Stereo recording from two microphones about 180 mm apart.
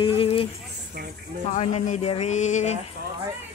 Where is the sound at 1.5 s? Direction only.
40° left (ahead or behind).